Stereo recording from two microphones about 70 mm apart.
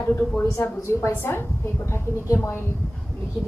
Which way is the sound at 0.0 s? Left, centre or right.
Left.